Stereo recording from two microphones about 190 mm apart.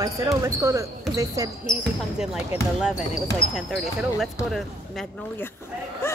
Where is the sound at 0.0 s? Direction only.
15° right (ahead or behind).